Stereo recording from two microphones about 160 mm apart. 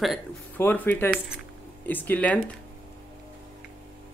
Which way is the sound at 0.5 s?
10° left (ahead or behind).